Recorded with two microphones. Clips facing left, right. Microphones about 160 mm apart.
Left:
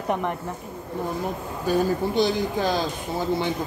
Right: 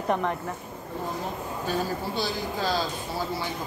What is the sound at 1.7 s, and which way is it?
Speech, 20° left (ahead or behind).